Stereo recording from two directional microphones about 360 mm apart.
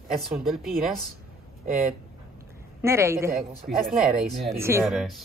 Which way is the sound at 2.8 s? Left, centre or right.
Centre.